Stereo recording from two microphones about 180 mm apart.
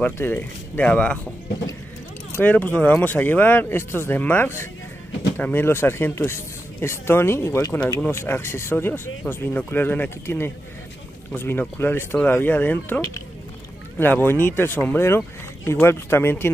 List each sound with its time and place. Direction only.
0.0 s speech: 10° left (ahead or behind)
2.3 s speech: 10° left (ahead or behind)